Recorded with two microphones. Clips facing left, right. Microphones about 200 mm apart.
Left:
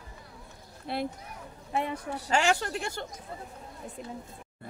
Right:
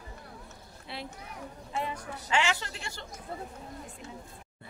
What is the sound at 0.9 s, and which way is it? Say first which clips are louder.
Speech: left 9 dB; 45° left (ahead or behind).